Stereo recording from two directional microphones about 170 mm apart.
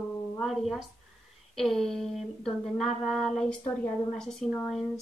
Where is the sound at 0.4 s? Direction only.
Centre (ahead or behind).